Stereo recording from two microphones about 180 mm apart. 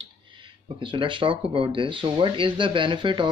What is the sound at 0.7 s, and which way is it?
Speech, 25° right (ahead or behind).